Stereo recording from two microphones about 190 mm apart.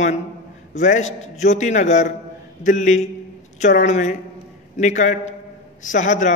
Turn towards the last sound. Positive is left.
turn(degrees=40)  # may be behind; listen again after turning